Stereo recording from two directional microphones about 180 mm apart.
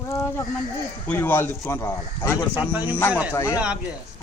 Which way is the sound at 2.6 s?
10° right (ahead or behind).